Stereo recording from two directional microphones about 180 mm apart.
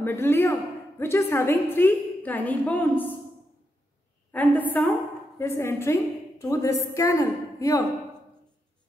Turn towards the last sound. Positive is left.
turn(degrees=20)  # may be behind; listen again after turning